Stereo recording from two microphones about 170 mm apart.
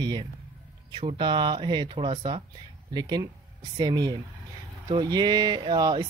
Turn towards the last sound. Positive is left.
turn(degrees=-25)  # may be behind; listen again after turning